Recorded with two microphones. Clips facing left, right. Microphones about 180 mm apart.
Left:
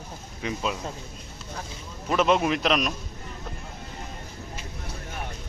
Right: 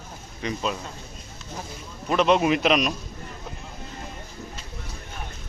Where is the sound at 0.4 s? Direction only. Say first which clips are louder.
Right 1 dB; 5° left (ahead or behind).